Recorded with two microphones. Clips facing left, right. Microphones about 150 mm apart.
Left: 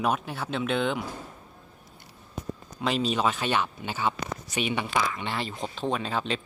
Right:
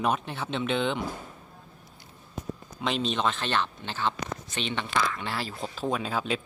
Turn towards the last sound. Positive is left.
turn(degrees=-5)  # may be behind; listen again after turning